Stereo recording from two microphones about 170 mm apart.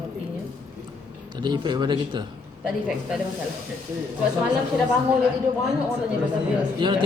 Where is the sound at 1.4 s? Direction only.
25° right (ahead or behind).